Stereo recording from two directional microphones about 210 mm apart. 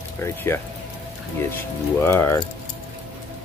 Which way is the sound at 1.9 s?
10° left (ahead or behind).